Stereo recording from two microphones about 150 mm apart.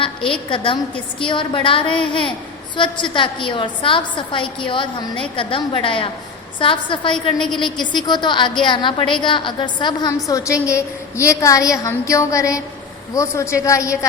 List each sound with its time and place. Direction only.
0.0 s a woman's voice: 35° left (ahead or behind); by 14.1 s 20° left (ahead or behind)